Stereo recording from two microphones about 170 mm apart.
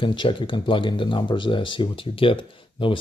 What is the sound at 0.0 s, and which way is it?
Speech, 30° left (ahead or behind).